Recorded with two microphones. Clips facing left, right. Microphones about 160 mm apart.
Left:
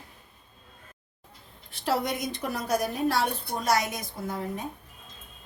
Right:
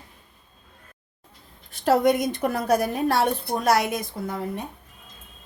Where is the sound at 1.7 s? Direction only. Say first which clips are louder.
Right 9 dB; 50° right (ahead or behind).